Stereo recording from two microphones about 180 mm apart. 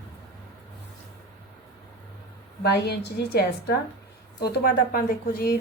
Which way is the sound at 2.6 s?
65° left (ahead or behind).